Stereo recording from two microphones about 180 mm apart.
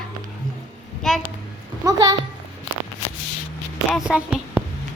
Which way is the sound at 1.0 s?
Centre (ahead or behind).